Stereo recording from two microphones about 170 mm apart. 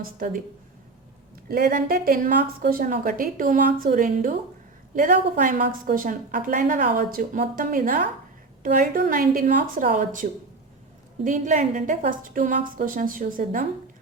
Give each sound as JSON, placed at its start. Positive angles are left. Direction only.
{"t": 1.5, "sound": "a woman's voice", "side_deg": -60}